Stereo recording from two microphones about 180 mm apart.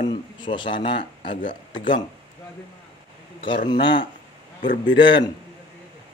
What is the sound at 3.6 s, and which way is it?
Speech, 25° left (ahead or behind).